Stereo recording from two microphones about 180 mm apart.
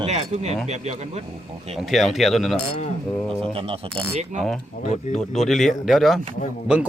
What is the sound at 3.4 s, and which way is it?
Speech, 30° right (ahead or behind).